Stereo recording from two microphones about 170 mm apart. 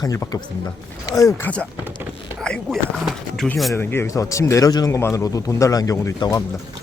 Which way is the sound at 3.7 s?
15° left (ahead or behind).